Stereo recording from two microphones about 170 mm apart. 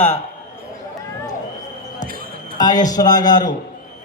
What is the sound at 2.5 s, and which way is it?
Speech, 25° left (ahead or behind).